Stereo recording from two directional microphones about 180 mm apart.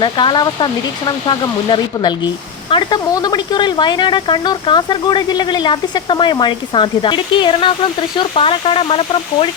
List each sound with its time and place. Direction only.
0.0 s speech: 25° left (ahead or behind)